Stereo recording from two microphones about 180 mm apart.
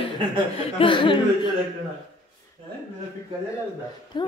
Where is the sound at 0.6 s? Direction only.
30° left (ahead or behind).